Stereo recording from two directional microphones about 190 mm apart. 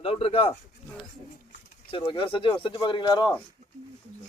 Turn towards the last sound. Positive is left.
turn(degrees=25)  # may be behind; listen again after turning